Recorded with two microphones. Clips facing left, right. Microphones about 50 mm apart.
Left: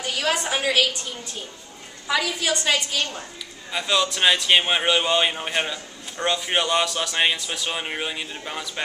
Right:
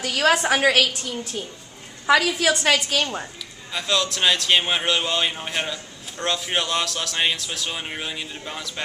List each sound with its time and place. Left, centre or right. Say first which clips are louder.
0.0 s a woman's voice: right 5 dB; right
2.0 s a woman's voice: right 5 dB; right
3.7 s a man's voice: left 1 dB; centre